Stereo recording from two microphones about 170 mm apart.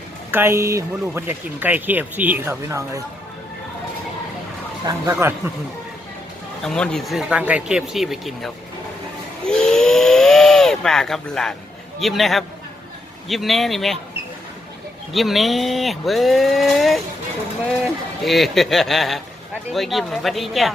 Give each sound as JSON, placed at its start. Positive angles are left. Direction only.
{"t": 0.3, "sound": "speech", "side_deg": -15}
{"t": 4.9, "sound": "a man's voice", "side_deg": -25}
{"t": 6.6, "sound": "speech", "side_deg": 5}
{"t": 9.5, "sound": "hiss", "side_deg": 5}
{"t": 11.9, "sound": "speech", "side_deg": 0}
{"t": 15.1, "sound": "speech", "side_deg": 0}
{"t": 18.2, "sound": "speech", "side_deg": 0}